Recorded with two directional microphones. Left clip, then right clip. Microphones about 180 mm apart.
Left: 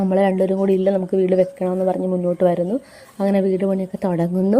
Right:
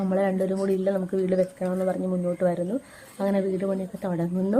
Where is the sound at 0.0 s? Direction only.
30° left (ahead or behind).